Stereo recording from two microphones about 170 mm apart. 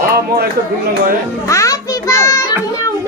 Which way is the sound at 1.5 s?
20° left (ahead or behind).